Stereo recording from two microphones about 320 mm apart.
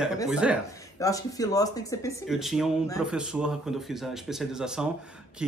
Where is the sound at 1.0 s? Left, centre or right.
Centre.